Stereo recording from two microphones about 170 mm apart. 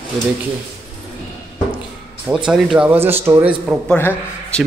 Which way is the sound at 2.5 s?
5° right (ahead or behind).